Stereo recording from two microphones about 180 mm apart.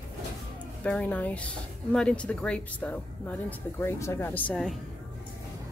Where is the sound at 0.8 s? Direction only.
5° left (ahead or behind).